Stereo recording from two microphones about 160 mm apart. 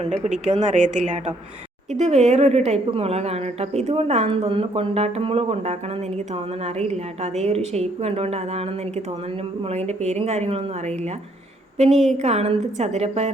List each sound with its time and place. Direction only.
0.7 s a woman's voice: 50° right (ahead or behind)
6.7 s a woman's voice: 45° right (ahead or behind)
9.6 s a woman's voice: 45° right (ahead or behind)